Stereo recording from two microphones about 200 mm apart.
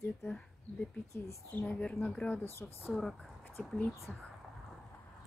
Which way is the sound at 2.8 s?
Centre (ahead or behind).